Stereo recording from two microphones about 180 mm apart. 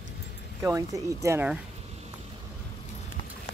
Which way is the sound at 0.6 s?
15° right (ahead or behind).